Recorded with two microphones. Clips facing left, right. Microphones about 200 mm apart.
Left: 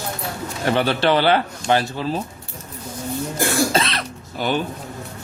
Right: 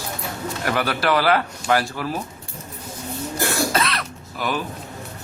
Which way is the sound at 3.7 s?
25° left (ahead or behind).